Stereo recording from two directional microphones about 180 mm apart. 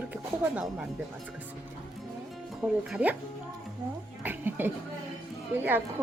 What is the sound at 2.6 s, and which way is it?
Speech, 5° right (ahead or behind).